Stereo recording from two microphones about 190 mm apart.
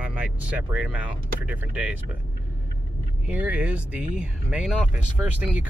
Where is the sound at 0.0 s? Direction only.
5° right (ahead or behind).